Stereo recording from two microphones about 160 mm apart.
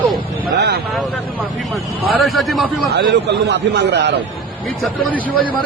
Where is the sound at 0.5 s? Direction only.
90° right.